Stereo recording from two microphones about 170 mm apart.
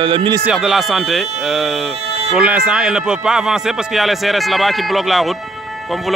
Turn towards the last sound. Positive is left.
turn(degrees=0)  # may be behind; listen again after turning